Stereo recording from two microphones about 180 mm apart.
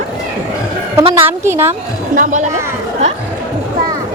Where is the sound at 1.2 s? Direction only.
15° right (ahead or behind).